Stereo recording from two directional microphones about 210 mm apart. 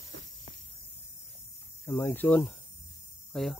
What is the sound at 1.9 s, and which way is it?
Speech, 10° left (ahead or behind).